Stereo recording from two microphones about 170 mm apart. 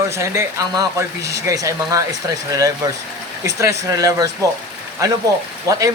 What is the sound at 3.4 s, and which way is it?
Speech, 15° right (ahead or behind).